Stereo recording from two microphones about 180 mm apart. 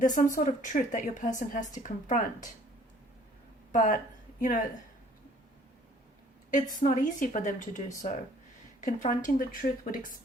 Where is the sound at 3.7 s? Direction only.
45° left (ahead or behind).